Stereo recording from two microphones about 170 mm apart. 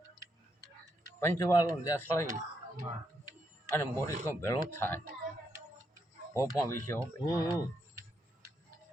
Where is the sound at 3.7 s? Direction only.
15° left (ahead or behind).